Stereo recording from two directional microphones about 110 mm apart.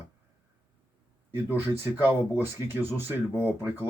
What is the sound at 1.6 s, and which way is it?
Speech, 20° right (ahead or behind).